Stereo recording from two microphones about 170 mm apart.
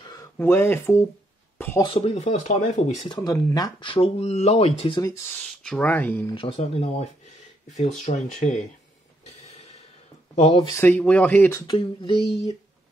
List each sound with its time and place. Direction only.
0.0 s a sound: 25° left (ahead or behind)
0.4 s speech: 10° left (ahead or behind)
1.8 s speech: 35° left (ahead or behind)
2.2 s speech: 45° left (ahead or behind)
3.1 s speech: 20° left (ahead or behind)
5.6 s speech: 5° left (ahead or behind)
6.3 s speech: 35° left (ahead or behind)
10.3 s speech: 35° left (ahead or behind)
10.7 s speech: 10° left (ahead or behind)
11.7 s speech: 30° left (ahead or behind)